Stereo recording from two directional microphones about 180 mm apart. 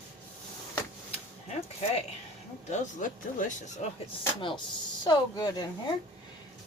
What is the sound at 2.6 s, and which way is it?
Speech, 40° left (ahead or behind).